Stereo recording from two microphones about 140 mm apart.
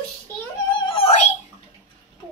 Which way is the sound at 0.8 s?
40° left (ahead or behind).